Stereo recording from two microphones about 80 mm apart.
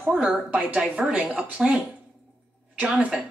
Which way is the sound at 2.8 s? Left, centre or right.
Centre.